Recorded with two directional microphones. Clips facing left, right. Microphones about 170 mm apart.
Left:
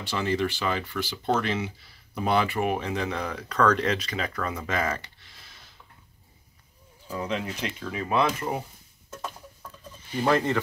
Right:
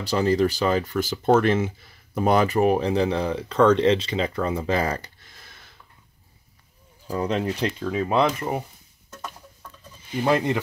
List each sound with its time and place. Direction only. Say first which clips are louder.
0.0 s speech: right 6 dB; 40° right (ahead or behind)
7.1 s speech: right 6 dB; 40° right (ahead or behind)
8.1 s speech: right 2 dB; 20° right (ahead or behind)
10.2 s speech: right 2 dB; 15° right (ahead or behind)